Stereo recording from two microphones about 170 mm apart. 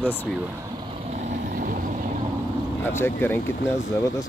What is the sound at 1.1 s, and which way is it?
Vehicle, 50° right (ahead or behind).